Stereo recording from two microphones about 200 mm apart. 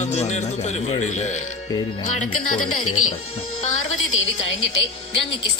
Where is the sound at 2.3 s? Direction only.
90° left.